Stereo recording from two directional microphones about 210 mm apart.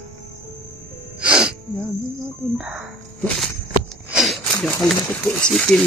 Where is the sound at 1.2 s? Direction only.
5° right (ahead or behind).